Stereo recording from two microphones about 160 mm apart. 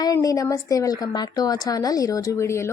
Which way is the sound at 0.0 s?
20° left (ahead or behind).